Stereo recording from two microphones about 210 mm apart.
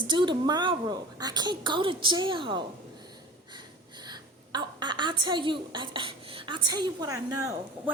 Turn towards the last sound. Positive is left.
turn(degrees=-15)  # may be behind; listen again after turning